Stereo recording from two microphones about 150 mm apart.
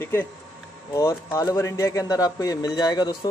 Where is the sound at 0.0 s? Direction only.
15° left (ahead or behind).